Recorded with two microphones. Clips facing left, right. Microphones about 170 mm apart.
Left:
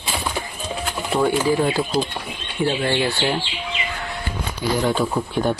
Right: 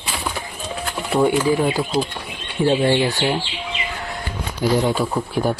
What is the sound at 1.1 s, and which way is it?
Speech, 15° right (ahead or behind).